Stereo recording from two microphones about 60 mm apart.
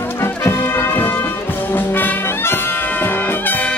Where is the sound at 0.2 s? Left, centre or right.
Left.